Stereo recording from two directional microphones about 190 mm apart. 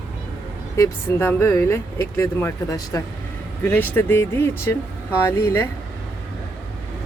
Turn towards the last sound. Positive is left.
turn(degrees=15)  # may be behind; listen again after turning